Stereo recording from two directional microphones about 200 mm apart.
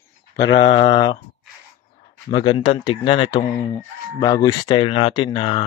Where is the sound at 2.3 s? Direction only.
25° left (ahead or behind).